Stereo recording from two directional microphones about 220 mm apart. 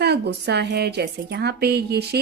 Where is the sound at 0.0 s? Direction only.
50° right (ahead or behind).